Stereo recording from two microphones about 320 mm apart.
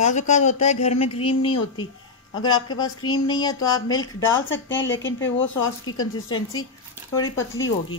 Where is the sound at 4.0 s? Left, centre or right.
Left.